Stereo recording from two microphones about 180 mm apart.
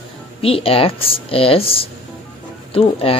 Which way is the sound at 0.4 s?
30° left (ahead or behind).